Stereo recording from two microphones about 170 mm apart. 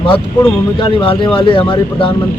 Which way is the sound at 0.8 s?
30° left (ahead or behind).